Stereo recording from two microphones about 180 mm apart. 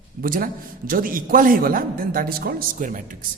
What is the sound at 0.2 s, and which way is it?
A man's voice, 50° right (ahead or behind).